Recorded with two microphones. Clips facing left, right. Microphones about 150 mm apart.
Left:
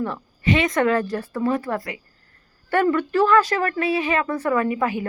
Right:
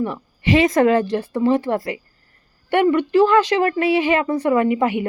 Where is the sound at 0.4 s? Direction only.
35° right (ahead or behind).